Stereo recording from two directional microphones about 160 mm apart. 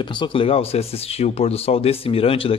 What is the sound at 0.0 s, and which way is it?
A man's voice, 30° left (ahead or behind).